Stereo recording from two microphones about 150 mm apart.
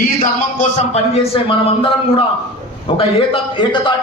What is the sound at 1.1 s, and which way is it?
A man's voice, 40° left (ahead or behind).